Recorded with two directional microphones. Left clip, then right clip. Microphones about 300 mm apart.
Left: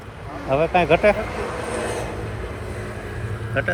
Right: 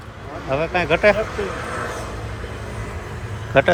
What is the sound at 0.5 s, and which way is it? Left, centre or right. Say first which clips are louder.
Speech: left 2 dB; centre.